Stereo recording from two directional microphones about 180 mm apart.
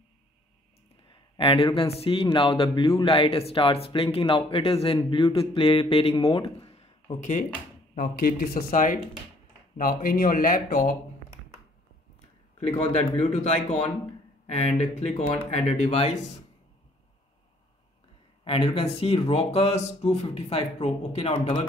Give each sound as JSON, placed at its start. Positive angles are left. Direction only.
{"t": 1.3, "sound": "speech", "side_deg": 30}
{"t": 12.5, "sound": "speech", "side_deg": 35}
{"t": 18.4, "sound": "speech", "side_deg": 30}